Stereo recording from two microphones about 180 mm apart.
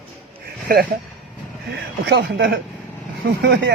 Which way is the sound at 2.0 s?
70° right (ahead or behind).